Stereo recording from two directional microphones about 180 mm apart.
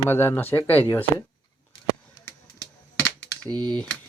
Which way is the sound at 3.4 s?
25° right (ahead or behind).